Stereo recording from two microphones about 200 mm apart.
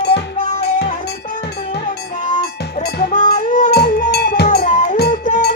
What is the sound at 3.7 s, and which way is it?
Cowbell, 55° left (ahead or behind).